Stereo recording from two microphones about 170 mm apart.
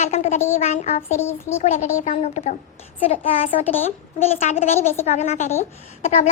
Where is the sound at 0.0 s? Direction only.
40° left (ahead or behind).